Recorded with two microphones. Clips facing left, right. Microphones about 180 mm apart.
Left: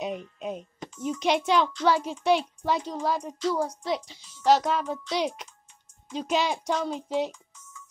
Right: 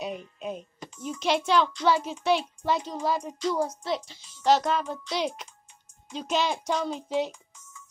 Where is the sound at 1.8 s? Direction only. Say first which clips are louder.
Left 1 dB; 10° left (ahead or behind).